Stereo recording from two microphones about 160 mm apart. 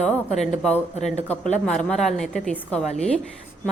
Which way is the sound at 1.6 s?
5° left (ahead or behind).